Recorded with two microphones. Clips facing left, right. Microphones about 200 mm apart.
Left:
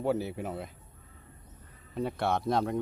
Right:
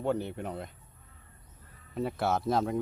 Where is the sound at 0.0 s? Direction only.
5° left (ahead or behind).